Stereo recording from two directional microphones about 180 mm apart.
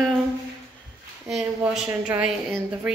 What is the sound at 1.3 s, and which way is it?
Speech, centre (ahead or behind).